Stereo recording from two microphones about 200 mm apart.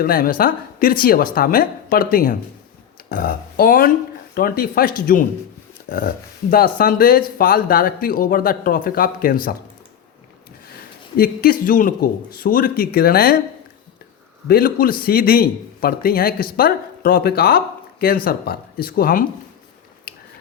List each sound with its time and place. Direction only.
0.0 s speech: 45° left (ahead or behind)
11.2 s speech: 45° left (ahead or behind)
14.4 s speech: 50° left (ahead or behind)